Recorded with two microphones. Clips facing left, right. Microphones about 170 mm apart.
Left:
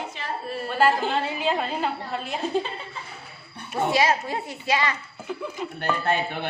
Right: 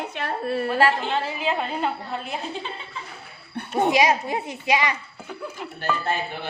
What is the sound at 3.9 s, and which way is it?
Speech, 15° right (ahead or behind).